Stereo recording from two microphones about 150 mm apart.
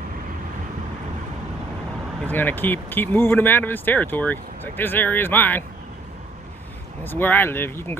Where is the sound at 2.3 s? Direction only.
15° left (ahead or behind).